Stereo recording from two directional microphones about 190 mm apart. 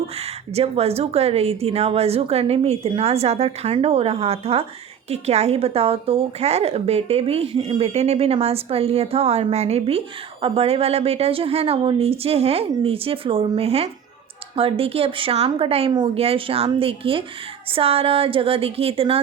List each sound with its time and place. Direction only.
0.2 s a woman's voice: 30° right (ahead or behind)